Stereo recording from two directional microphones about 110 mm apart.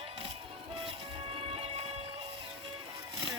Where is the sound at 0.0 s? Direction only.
55° right (ahead or behind).